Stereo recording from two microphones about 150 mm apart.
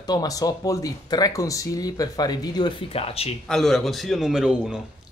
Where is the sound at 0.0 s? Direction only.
25° left (ahead or behind).